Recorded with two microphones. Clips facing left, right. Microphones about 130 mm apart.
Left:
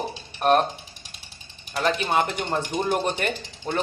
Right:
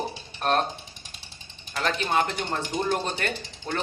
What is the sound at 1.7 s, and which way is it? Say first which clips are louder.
Speech: left 3 dB; 10° left (ahead or behind).